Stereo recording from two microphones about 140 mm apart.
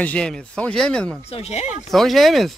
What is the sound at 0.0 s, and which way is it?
Speech, 10° left (ahead or behind).